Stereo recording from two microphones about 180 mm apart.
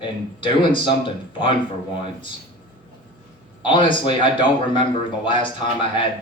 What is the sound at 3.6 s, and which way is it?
A man's voice, 30° left (ahead or behind).